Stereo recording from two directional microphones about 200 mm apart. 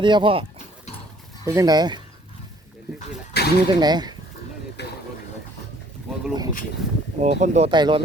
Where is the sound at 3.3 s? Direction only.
55° left (ahead or behind).